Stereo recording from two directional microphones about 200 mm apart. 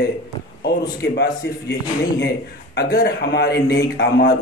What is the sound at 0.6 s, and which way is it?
Speech, 55° left (ahead or behind).